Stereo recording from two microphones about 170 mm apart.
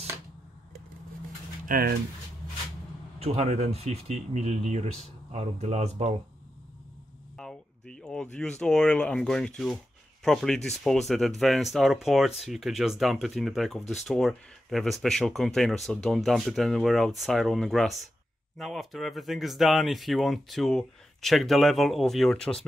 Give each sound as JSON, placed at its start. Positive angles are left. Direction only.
{"t": 1.7, "sound": "speech", "side_deg": -65}
{"t": 3.2, "sound": "speech", "side_deg": -40}
{"t": 7.3, "sound": "speech", "side_deg": 5}